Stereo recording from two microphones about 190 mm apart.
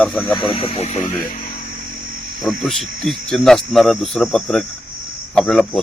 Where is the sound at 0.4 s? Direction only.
30° left (ahead or behind).